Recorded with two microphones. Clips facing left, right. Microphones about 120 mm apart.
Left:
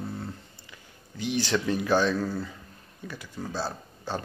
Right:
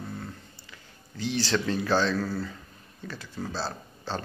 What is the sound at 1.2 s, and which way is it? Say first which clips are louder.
Speech: even; 15° left (ahead or behind).